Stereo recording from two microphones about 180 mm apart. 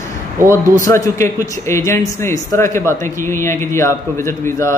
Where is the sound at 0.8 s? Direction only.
15° left (ahead or behind).